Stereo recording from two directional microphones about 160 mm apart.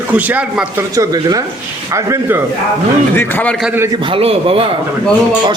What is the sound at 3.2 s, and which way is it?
Speech, 10° left (ahead or behind).